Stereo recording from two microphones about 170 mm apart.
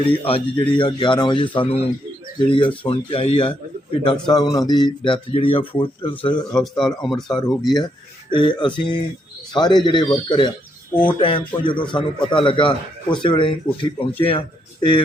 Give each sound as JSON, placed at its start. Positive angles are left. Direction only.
{"t": 0.0, "sound": "a man's voice", "side_deg": 30}
{"t": 6.6, "sound": "speech", "side_deg": 5}
{"t": 8.3, "sound": "a man's voice", "side_deg": 30}